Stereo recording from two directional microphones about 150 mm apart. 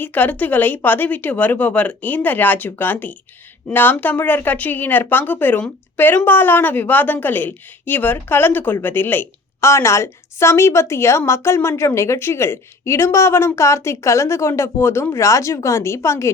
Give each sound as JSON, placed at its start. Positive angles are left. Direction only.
{"t": 0.0, "sound": "speech", "side_deg": 10}